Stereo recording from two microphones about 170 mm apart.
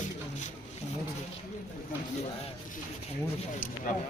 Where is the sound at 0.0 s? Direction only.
45° left (ahead or behind).